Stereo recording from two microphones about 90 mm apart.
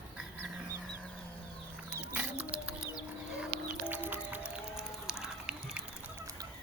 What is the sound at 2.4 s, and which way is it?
Music, 15° right (ahead or behind).